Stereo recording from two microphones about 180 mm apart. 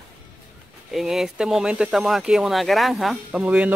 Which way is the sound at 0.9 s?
Centre (ahead or behind).